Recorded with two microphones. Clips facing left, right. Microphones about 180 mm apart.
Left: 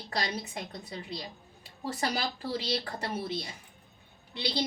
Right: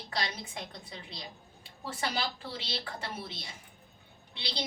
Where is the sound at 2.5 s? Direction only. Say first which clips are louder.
Left 7 dB; 45° left (ahead or behind).